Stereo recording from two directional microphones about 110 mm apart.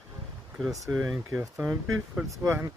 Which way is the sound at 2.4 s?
30° right (ahead or behind).